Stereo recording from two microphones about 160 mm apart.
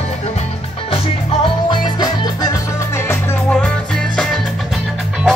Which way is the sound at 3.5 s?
5° left (ahead or behind).